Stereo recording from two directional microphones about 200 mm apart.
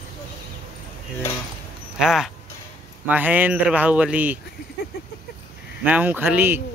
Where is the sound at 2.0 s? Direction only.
Centre (ahead or behind).